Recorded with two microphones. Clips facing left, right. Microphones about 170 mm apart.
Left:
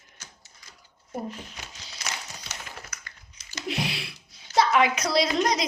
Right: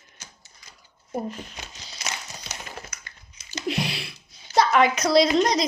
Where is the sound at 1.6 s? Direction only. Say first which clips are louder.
Right 2 dB; 20° right (ahead or behind).